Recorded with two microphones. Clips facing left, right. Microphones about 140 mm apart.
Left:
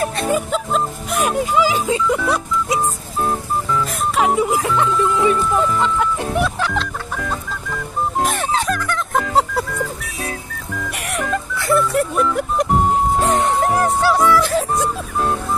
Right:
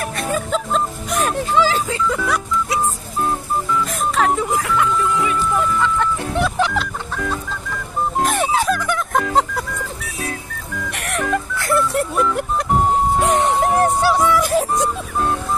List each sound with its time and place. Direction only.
0.0 s music: 25° left (ahead or behind)
0.5 s music: 5° left (ahead or behind); by 2.8 s 25° left (ahead or behind)
4.1 s music: 10° left (ahead or behind)
4.6 s speech: 25° left (ahead or behind)
5.9 s music: 10° left (ahead or behind)
8.4 s music: 5° right (ahead or behind)
9.1 s music: 5° left (ahead or behind)
11.2 s music: centre (ahead or behind)
13.2 s music: 20° right (ahead or behind)